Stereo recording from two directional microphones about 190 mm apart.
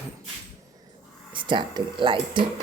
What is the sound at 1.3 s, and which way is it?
Speech, 25° right (ahead or behind).